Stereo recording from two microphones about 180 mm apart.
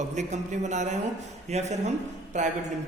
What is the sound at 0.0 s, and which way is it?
A man's voice, 40° right (ahead or behind).